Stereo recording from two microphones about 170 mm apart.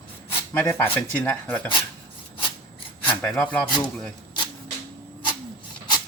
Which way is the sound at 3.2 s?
5° left (ahead or behind).